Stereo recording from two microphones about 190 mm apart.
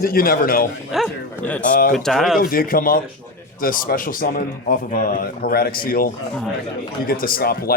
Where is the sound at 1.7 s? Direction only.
45° left (ahead or behind).